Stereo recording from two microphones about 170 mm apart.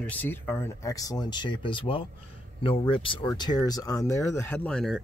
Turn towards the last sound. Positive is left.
turn(degrees=5)  # may be behind; listen again after turning